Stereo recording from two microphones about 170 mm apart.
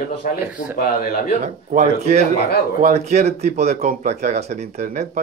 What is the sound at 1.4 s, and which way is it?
Speech, 45° right (ahead or behind).